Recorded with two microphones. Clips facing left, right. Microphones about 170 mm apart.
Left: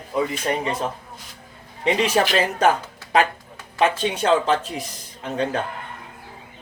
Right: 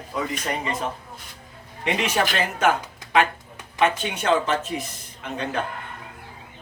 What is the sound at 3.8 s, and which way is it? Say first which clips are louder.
Speech: left 2 dB; 35° left (ahead or behind).